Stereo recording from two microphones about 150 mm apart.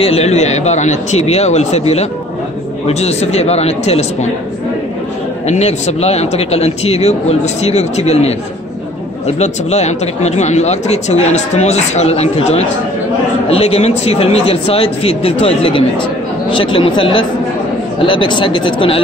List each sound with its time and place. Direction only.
0.0 s speech: 45° left (ahead or behind)
5.5 s speech: 50° left (ahead or behind)
9.4 s speech: 50° left (ahead or behind)